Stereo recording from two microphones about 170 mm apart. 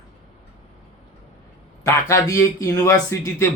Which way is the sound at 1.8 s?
20° left (ahead or behind).